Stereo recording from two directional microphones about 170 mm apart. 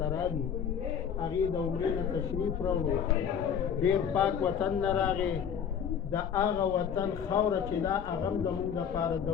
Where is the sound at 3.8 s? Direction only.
5° left (ahead or behind).